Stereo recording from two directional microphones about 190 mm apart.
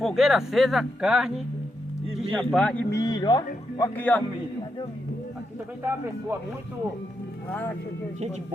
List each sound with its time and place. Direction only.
0.0 s speech: centre (ahead or behind)
2.3 s speech: 5° left (ahead or behind)
2.9 s speech: 20° left (ahead or behind)
3.9 s speech: 10° left (ahead or behind)